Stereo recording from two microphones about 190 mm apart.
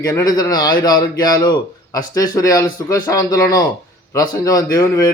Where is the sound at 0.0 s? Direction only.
20° left (ahead or behind).